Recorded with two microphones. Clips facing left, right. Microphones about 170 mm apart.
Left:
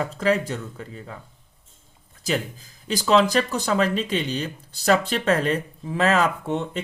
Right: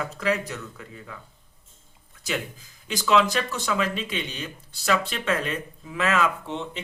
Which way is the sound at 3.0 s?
35° left (ahead or behind).